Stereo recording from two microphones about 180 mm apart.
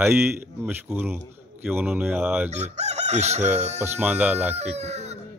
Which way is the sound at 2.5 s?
40° right (ahead or behind).